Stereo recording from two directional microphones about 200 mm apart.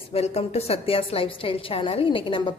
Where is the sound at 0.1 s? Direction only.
30° left (ahead or behind).